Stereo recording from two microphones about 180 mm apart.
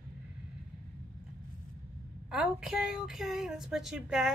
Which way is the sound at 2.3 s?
5° right (ahead or behind).